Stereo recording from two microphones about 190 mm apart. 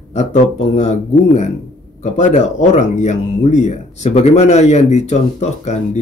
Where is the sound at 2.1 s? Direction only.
40° left (ahead or behind).